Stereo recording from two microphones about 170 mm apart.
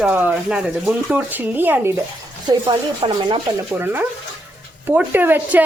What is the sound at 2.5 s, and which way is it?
Speech, 30° right (ahead or behind).